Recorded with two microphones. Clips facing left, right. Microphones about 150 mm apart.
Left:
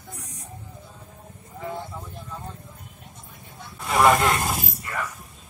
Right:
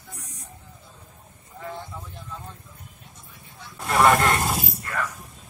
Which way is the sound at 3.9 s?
Centre (ahead or behind).